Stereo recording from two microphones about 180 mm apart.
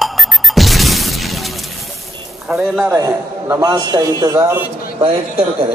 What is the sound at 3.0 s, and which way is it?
A man's voice, 20° right (ahead or behind).